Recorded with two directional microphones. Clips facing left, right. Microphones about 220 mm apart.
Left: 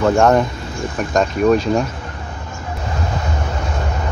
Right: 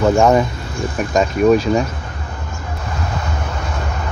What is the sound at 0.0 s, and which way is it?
Speech, 5° right (ahead or behind).